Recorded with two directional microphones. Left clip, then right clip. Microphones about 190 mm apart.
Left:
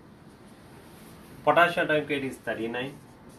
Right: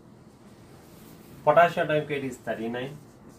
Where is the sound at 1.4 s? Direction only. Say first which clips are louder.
Right 2 dB; 30° right (ahead or behind).